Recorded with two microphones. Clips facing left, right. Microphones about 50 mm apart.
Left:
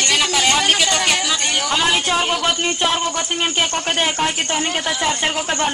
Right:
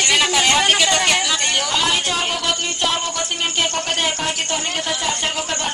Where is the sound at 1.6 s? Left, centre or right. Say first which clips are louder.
Left 2 dB; centre.